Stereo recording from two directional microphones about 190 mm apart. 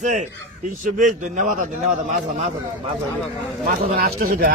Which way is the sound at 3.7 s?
45° right (ahead or behind).